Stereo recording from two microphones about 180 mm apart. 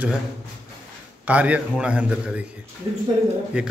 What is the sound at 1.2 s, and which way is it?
A man's voice, 10° right (ahead or behind).